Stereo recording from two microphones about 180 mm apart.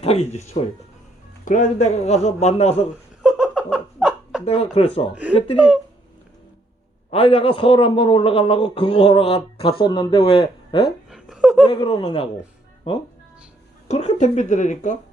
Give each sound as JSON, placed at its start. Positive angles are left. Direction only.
{"t": 0.0, "sound": "speech", "side_deg": 35}
{"t": 3.2, "sound": "laughter", "side_deg": -5}
{"t": 4.4, "sound": "speech", "side_deg": 35}
{"t": 5.2, "sound": "speech", "side_deg": -5}
{"t": 7.1, "sound": "a man's voice", "side_deg": 30}
{"t": 11.1, "sound": "a sound", "side_deg": -5}
{"t": 11.7, "sound": "a man's voice", "side_deg": 25}
{"t": 13.8, "sound": "speech", "side_deg": 35}